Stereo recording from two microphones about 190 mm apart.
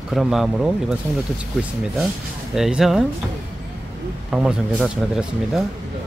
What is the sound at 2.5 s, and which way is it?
Speech, centre (ahead or behind).